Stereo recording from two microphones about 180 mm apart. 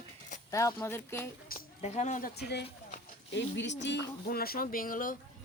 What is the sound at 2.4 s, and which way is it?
Speech, 65° left (ahead or behind).